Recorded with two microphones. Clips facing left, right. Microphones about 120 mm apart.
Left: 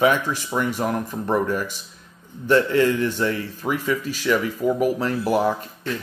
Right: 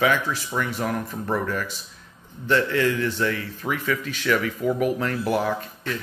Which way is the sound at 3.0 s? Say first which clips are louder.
Left 2 dB; 15° left (ahead or behind).